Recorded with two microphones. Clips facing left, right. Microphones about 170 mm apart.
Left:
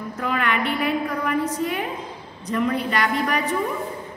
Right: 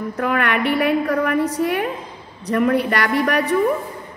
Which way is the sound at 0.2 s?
60° right (ahead or behind).